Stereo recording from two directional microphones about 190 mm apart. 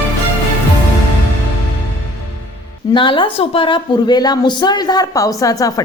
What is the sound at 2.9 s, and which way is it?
A woman's voice, 25° left (ahead or behind).